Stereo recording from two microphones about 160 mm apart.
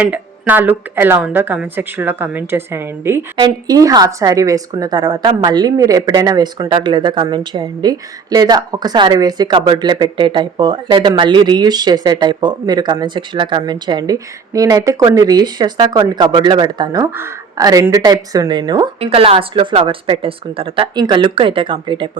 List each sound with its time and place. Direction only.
0.0 s speech: 10° right (ahead or behind)
18.9 s speech: 35° right (ahead or behind)